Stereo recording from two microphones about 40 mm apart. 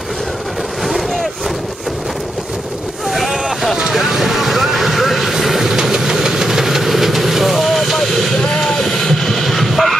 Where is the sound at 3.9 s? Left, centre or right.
Centre.